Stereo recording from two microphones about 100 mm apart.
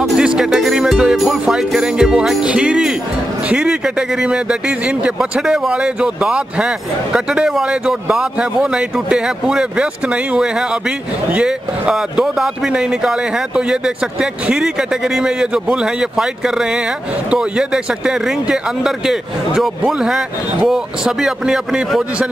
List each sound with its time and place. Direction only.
0.0 s speech: 5° right (ahead or behind)